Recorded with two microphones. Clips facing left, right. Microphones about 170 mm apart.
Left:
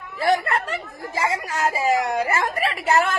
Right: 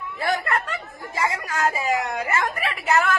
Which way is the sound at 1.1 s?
30° left (ahead or behind).